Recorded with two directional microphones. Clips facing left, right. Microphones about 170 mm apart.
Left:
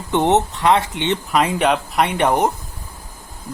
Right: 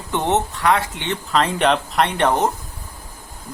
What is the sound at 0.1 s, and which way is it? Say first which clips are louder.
Speech: left 4 dB; 20° left (ahead or behind).